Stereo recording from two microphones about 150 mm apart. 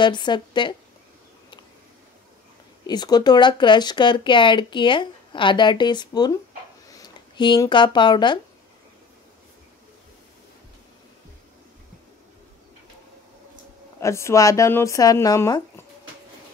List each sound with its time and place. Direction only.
0.0 s speech: 30° left (ahead or behind)
2.9 s speech: 30° left (ahead or behind)
13.9 s speech: 20° left (ahead or behind)